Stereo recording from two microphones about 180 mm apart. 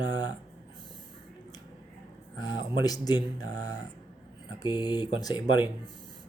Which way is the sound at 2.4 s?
25° left (ahead or behind).